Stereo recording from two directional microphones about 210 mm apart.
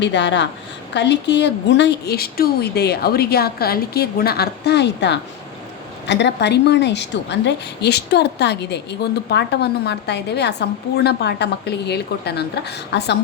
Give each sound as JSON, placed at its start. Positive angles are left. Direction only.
{"t": 0.0, "sound": "a woman's voice", "side_deg": 55}